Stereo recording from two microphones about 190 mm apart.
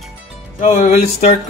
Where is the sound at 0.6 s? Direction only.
35° left (ahead or behind).